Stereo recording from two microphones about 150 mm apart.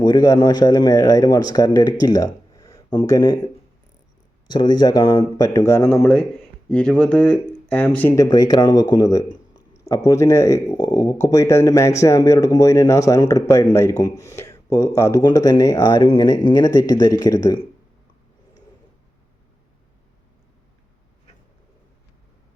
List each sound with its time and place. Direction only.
0.0 s speech: 30° left (ahead or behind)
4.5 s speech: 30° left (ahead or behind); by 8.2 s 15° left (ahead or behind)
8.2 s speech: 25° left (ahead or behind)